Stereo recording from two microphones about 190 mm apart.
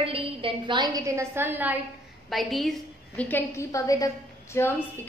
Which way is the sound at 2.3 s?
Centre (ahead or behind).